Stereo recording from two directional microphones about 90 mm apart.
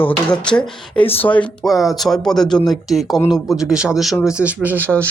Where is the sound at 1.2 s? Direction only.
15° left (ahead or behind).